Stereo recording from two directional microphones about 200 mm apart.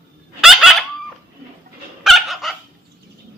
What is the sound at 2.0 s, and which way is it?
Dog, centre (ahead or behind).